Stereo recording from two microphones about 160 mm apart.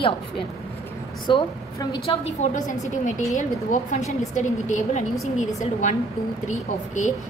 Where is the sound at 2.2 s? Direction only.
50° left (ahead or behind).